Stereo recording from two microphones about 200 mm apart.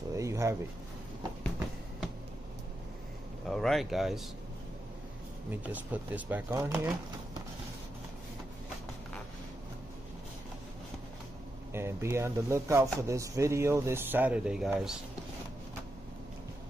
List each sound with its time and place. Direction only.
0.1 s a sound: 15° right (ahead or behind)
3.4 s speech: centre (ahead or behind)
5.5 s speech: 10° right (ahead or behind)
11.7 s speech: 10° right (ahead or behind)